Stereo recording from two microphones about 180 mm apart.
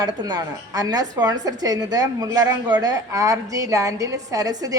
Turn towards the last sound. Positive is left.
turn(degrees=-20)  # may be behind; listen again after turning